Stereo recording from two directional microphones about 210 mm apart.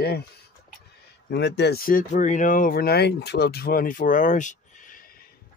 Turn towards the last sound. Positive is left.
turn(degrees=40)  # may be behind; listen again after turning